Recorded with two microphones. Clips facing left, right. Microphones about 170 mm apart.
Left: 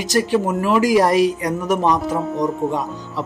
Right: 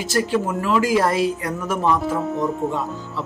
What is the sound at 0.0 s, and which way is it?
Speech, 20° left (ahead or behind).